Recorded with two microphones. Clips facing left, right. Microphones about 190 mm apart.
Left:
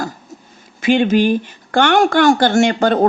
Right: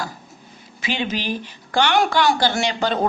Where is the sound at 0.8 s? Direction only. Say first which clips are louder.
Left 12 dB; 50° left (ahead or behind).